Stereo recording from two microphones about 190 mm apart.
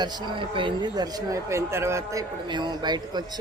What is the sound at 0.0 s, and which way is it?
Speech, 20° right (ahead or behind).